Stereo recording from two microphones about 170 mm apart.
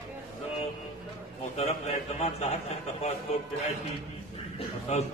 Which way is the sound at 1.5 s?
40° left (ahead or behind).